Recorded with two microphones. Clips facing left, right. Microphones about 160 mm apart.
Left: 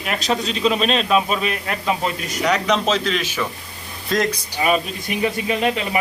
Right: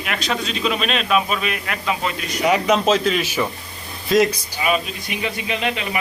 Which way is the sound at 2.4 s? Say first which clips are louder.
Right 2 dB; 5° right (ahead or behind).